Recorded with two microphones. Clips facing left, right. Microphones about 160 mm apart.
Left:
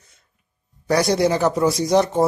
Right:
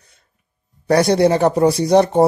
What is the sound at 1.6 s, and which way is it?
Speech, 60° right (ahead or behind).